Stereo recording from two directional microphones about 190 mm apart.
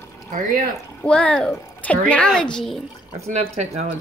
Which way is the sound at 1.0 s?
5° left (ahead or behind).